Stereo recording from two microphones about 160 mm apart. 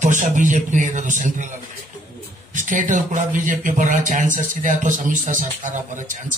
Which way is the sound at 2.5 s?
55° right (ahead or behind).